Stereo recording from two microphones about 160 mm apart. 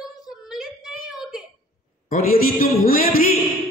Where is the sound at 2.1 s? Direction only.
60° left (ahead or behind).